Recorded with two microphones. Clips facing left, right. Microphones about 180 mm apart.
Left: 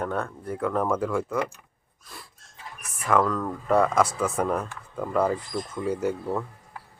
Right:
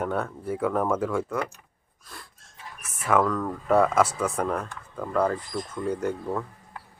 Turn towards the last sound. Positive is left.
turn(degrees=5)  # may be behind; listen again after turning